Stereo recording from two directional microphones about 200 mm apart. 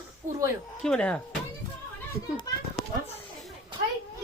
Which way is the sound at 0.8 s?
5° left (ahead or behind).